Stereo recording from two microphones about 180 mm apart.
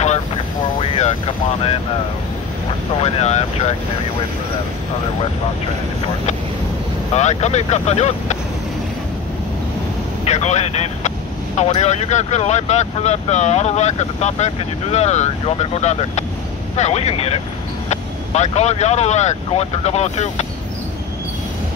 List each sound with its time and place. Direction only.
0.7 s speech: 35° left (ahead or behind)
3.0 s speech: 35° left (ahead or behind)
7.2 s speech: 40° left (ahead or behind)
10.2 s speech: 40° left (ahead or behind)